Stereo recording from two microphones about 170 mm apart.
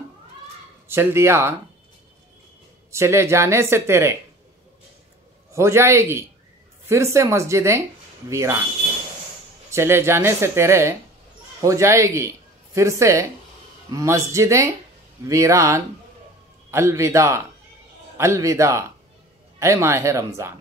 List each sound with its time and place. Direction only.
0.8 s speech: 15° right (ahead or behind)
2.9 s speech: 15° right (ahead or behind)
5.5 s speech: 15° right (ahead or behind)
9.7 s speech: 15° right (ahead or behind)